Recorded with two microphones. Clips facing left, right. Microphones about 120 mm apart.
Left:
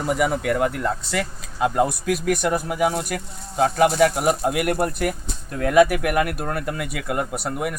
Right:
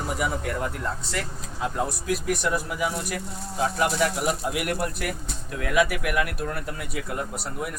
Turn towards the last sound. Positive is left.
turn(degrees=70)  # may be behind; listen again after turning